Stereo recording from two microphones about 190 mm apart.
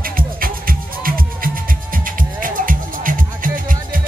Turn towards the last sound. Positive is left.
turn(degrees=-45)  # may be behind; listen again after turning